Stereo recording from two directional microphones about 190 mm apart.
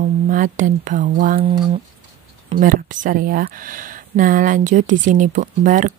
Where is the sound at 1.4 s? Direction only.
25° right (ahead or behind).